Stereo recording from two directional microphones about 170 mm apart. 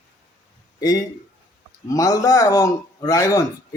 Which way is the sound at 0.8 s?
20° left (ahead or behind).